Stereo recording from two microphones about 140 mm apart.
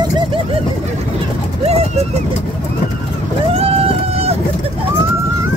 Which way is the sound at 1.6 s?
45° right (ahead or behind).